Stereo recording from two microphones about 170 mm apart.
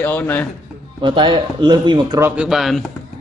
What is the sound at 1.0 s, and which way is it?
Speech, 25° right (ahead or behind).